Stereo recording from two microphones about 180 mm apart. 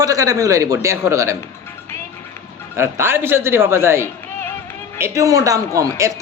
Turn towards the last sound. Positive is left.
turn(degrees=-15)  # may be behind; listen again after turning